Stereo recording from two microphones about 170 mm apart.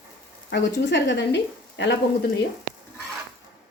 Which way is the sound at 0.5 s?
90° left.